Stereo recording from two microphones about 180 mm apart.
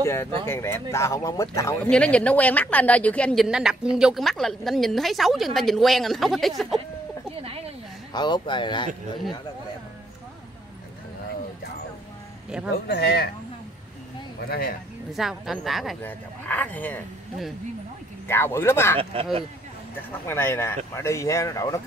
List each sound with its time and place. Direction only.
0.0 s a woman's voice: 15° left (ahead or behind)
1.9 s a woman's voice: 5° left (ahead or behind)
7.4 s a sound: 35° right (ahead or behind)
8.1 s speech: 25° left (ahead or behind)
12.8 s speech: 65° left (ahead or behind)
14.5 s speech: 60° left (ahead or behind)
15.1 s a woman's voice: centre (ahead or behind)
18.2 s a woman's voice: 15° left (ahead or behind)
20.2 s a woman's voice: 15° left (ahead or behind)